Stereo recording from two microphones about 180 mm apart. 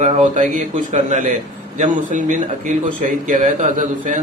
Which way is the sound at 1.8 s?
45° right (ahead or behind).